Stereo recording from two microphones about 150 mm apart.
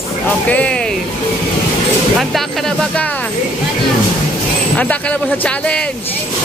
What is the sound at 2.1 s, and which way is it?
Speech, 5° left (ahead or behind).